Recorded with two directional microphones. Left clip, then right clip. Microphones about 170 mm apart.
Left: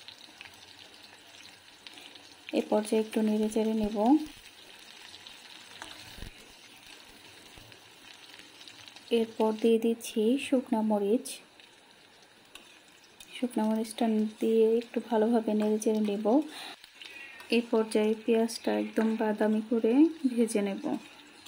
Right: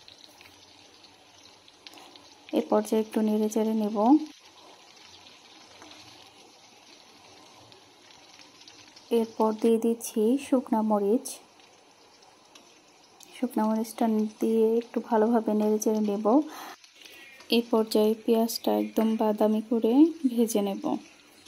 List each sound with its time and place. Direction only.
2.5 s speech: 10° right (ahead or behind)
9.1 s speech: 10° right (ahead or behind)
13.4 s speech: 5° right (ahead or behind)